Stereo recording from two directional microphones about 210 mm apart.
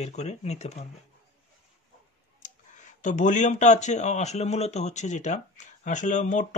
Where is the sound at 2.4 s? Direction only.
35° left (ahead or behind).